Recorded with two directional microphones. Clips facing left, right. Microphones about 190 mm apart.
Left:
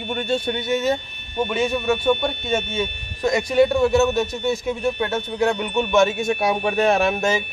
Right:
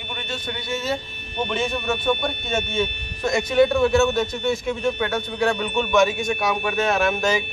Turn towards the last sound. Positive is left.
turn(degrees=25)  # may be behind; listen again after turning